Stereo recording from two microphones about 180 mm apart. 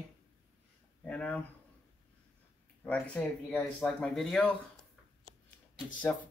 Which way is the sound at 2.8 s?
10° left (ahead or behind).